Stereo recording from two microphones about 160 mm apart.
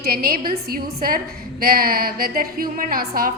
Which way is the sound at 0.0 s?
65° right (ahead or behind).